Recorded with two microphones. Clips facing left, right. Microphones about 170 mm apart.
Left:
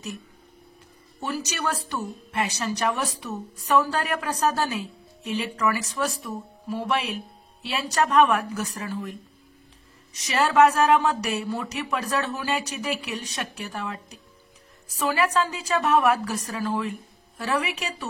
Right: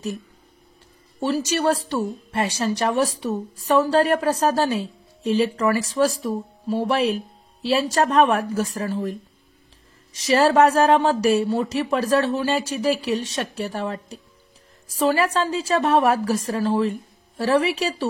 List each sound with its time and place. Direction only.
1.2 s speech: 30° right (ahead or behind)
10.1 s speech: 35° right (ahead or behind)